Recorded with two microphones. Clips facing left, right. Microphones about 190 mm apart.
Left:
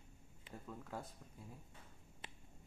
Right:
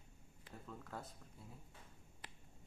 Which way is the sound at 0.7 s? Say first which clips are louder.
Left 2 dB; 10° left (ahead or behind).